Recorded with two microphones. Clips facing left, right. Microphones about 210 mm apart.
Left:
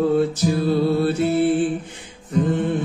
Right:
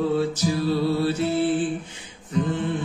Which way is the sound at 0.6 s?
55° left (ahead or behind).